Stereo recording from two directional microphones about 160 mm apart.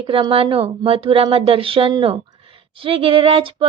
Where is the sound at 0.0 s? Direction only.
35° right (ahead or behind).